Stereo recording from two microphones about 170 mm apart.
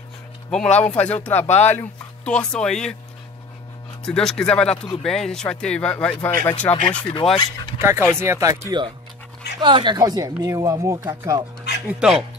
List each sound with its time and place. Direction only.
0.5 s speech: 5° left (ahead or behind)
4.0 s speech: 5° left (ahead or behind)
7.3 s speech: 25° left (ahead or behind)
8.1 s speech: 15° right (ahead or behind)
11.9 s speech: 5° right (ahead or behind)